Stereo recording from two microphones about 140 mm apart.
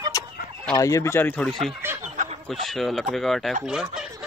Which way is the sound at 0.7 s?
20° left (ahead or behind).